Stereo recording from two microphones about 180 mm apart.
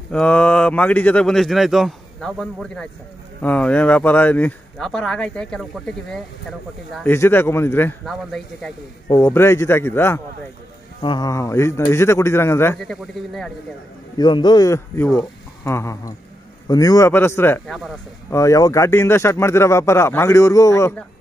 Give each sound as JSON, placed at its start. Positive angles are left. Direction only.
{"t": 0.1, "sound": "speech", "side_deg": 5}
{"t": 8.0, "sound": "speech", "side_deg": 0}
{"t": 9.1, "sound": "speech", "side_deg": 15}
{"t": 11.0, "sound": "speech", "side_deg": 25}
{"t": 12.7, "sound": "speech", "side_deg": 0}
{"t": 14.1, "sound": "speech", "side_deg": 25}
{"t": 17.6, "sound": "speech", "side_deg": 0}
{"t": 18.3, "sound": "speech", "side_deg": 15}